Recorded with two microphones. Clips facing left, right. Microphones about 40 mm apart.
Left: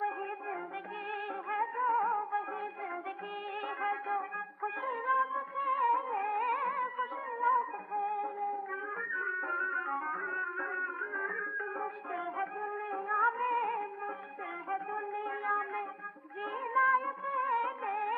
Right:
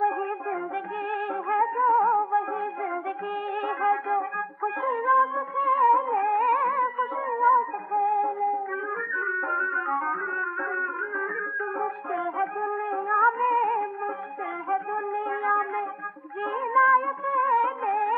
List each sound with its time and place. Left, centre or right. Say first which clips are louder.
1.1 s music: right 10 dB; centre
3.6 s music: right 10 dB; centre